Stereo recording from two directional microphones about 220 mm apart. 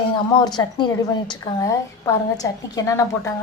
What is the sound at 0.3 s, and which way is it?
A woman's voice, 20° left (ahead or behind).